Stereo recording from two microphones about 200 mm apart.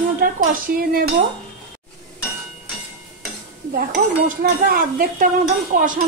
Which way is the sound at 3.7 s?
50° right (ahead or behind).